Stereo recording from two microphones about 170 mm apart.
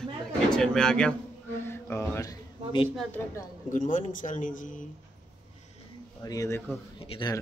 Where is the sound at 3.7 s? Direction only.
50° left (ahead or behind).